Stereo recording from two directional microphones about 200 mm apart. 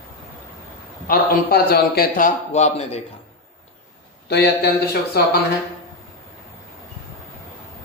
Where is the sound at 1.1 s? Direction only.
50° left (ahead or behind); by 3.0 s 30° left (ahead or behind).